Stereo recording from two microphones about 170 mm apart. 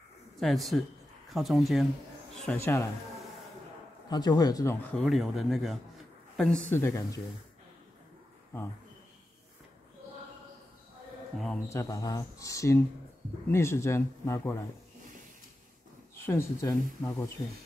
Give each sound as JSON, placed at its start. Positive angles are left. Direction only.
{"t": 0.4, "sound": "speech", "side_deg": 0}
{"t": 2.4, "sound": "speech", "side_deg": 10}
{"t": 4.1, "sound": "speech", "side_deg": 25}
{"t": 5.0, "sound": "speech", "side_deg": 0}
{"t": 11.5, "sound": "speech", "side_deg": 20}
{"t": 16.2, "sound": "speech", "side_deg": 15}